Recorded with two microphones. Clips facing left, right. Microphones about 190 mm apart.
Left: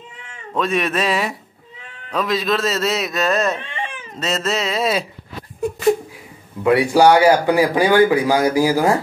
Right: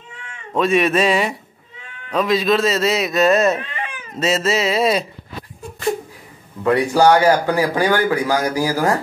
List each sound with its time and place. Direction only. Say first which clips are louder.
0.6 s a man's voice: right 4 dB; centre (ahead or behind)
3.6 s baby cry: left 1 dB; 25° left (ahead or behind)
4.2 s a man's voice: right 3 dB; centre (ahead or behind)
6.6 s speech: left 1 dB; 10° left (ahead or behind)